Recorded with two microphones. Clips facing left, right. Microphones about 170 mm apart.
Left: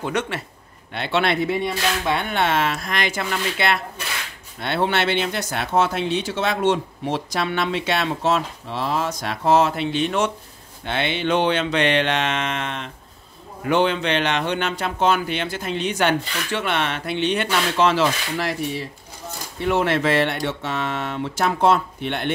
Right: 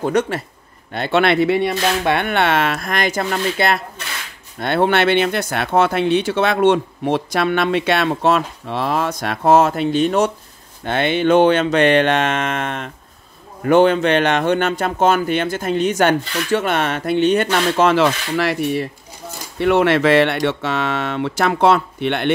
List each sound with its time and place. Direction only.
0.0 s a man's voice: 40° right (ahead or behind)
1.2 s speech: 75° right (ahead or behind)
1.7 s speech: 65° right (ahead or behind)
18.0 s speech: 75° right (ahead or behind)